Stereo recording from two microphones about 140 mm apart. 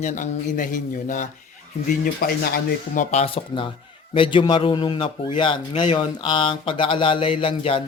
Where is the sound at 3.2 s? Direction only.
40° left (ahead or behind).